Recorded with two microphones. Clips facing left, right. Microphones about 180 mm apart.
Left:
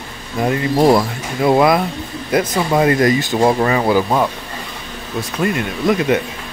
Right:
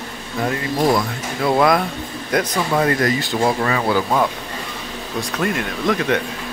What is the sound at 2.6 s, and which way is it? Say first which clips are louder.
Speech: left 5 dB; 15° left (ahead or behind).